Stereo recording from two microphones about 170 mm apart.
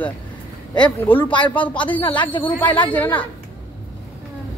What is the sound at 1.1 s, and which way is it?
Speech, 10° left (ahead or behind).